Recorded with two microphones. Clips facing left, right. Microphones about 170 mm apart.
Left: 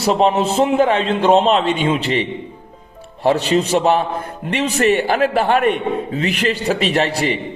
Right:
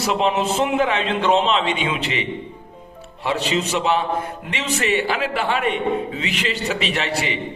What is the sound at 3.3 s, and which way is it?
A man's voice, 45° left (ahead or behind).